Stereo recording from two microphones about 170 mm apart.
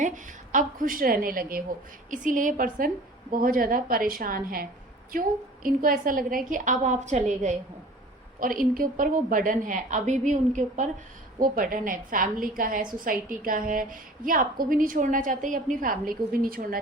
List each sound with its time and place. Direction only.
0.0 s a woman's voice: 50° right (ahead or behind)
8.4 s a woman's voice: 55° right (ahead or behind)